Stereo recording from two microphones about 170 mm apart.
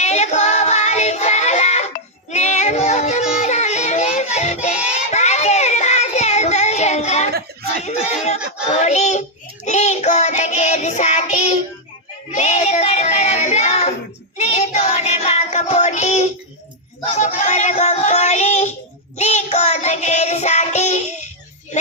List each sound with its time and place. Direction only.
0.0 s music: 40° left (ahead or behind)
7.8 s child singing: 40° left (ahead or behind)
12.3 s a sound: 40° left (ahead or behind)
14.3 s child singing: 40° left (ahead or behind)